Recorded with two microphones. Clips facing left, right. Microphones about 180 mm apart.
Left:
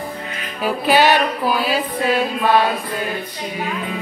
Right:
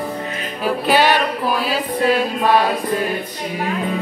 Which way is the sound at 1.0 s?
Centre (ahead or behind).